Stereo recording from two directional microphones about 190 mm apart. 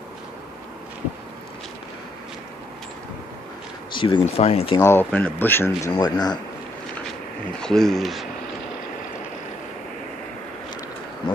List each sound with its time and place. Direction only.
3.9 s speech: 25° left (ahead or behind)
4.7 s speech: 15° left (ahead or behind)
7.5 s speech: 5° left (ahead or behind)